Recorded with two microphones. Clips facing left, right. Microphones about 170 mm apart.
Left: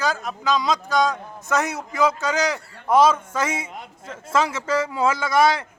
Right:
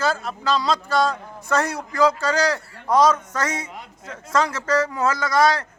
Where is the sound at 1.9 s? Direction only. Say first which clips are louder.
Right 2 dB; 20° left (ahead or behind).